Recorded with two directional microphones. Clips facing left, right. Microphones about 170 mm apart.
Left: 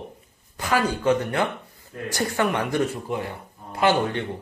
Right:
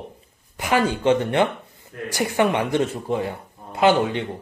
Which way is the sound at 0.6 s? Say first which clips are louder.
Right 3 dB; 20° right (ahead or behind).